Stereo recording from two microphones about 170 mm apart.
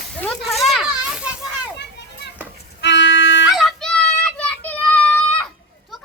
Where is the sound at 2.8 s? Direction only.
90° left.